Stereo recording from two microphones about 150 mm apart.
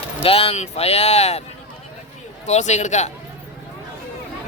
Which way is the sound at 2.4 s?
50° left (ahead or behind).